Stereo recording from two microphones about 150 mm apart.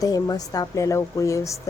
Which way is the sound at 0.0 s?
25° left (ahead or behind).